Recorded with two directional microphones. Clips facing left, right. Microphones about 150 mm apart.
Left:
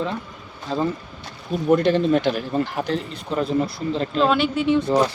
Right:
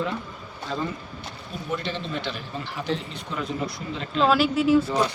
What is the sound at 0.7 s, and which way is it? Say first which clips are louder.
Speech: left 6 dB; 35° left (ahead or behind).